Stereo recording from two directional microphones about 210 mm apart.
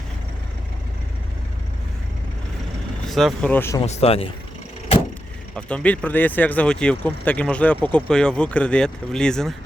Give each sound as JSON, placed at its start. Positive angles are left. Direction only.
{"t": 3.1, "sound": "speech", "side_deg": 0}
{"t": 3.8, "sound": "speech", "side_deg": 30}
{"t": 5.5, "sound": "speech", "side_deg": 5}